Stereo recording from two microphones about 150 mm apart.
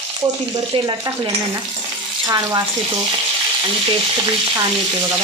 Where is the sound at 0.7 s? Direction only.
30° right (ahead or behind).